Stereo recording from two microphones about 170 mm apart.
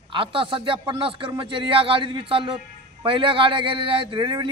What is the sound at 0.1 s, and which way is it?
A man's voice, 30° right (ahead or behind).